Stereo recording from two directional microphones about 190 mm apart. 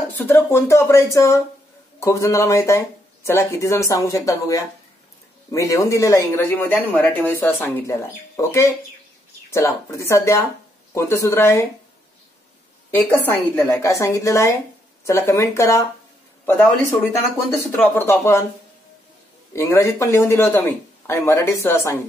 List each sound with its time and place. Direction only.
0.2 s speech: 10° left (ahead or behind)
12.9 s speech: 10° left (ahead or behind)
19.5 s speech: 15° left (ahead or behind)